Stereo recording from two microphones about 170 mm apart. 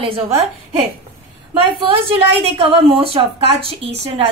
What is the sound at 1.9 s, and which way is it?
A woman's voice, 35° right (ahead or behind).